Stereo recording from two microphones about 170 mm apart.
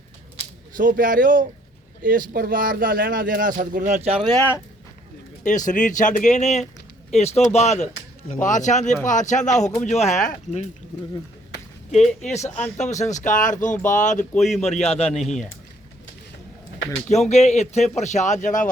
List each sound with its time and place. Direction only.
0.8 s speech: 55° right (ahead or behind)
4.4 s speech: 15° left (ahead or behind)
5.4 s speech: 45° left (ahead or behind)
12.2 s speech: 40° left (ahead or behind)
17.1 s speech: 40° left (ahead or behind)